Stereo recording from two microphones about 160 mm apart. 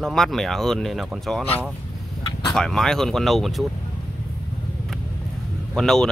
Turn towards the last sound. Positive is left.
turn(degrees=0)  # may be behind; listen again after turning